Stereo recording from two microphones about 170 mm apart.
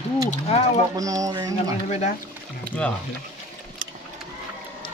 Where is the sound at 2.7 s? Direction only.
5° left (ahead or behind).